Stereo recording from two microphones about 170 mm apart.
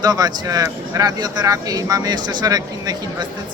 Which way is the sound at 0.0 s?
25° right (ahead or behind).